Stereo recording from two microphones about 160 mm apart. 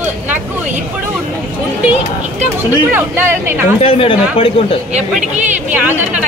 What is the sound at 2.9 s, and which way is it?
Speech, 15° right (ahead or behind).